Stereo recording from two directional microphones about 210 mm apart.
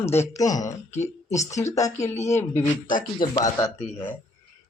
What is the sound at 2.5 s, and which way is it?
Speech, 40° left (ahead or behind).